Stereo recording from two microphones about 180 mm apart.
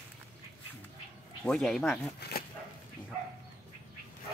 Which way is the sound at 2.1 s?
60° left (ahead or behind).